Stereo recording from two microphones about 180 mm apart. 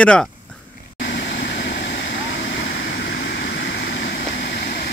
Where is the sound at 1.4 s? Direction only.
70° left (ahead or behind).